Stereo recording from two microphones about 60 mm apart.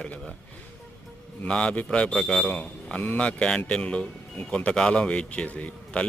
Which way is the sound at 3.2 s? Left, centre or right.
Centre.